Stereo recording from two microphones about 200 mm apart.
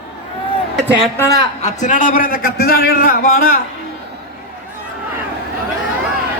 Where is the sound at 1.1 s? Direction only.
15° left (ahead or behind).